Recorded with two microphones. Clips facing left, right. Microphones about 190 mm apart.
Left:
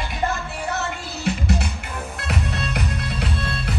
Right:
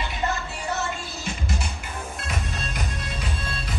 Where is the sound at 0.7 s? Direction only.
65° left (ahead or behind).